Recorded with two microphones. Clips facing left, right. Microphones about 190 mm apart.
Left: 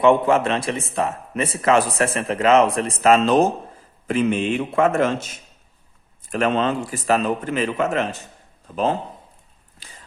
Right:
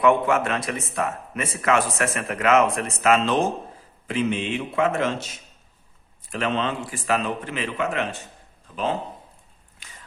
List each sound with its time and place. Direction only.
0.0 s speech: 30° left (ahead or behind)
4.0 s speech: 50° left (ahead or behind)
9.8 s a sound: 35° left (ahead or behind)